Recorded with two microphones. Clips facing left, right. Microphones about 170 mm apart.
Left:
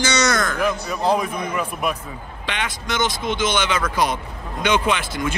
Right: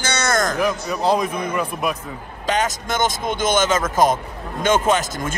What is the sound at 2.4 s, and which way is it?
Speech, 45° right (ahead or behind).